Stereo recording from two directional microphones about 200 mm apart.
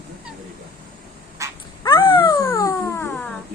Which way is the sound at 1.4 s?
15° right (ahead or behind).